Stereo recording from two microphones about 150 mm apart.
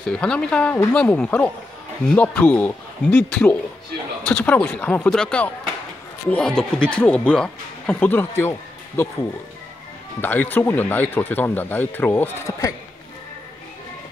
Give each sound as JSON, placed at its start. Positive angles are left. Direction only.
{"t": 0.0, "sound": "speech", "side_deg": 5}
{"t": 10.2, "sound": "speech", "side_deg": 10}